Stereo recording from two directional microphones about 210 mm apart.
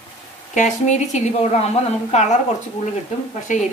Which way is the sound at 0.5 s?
35° left (ahead or behind).